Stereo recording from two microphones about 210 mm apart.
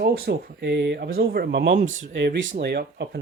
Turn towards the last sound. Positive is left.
turn(degrees=-50)  # may be behind; listen again after turning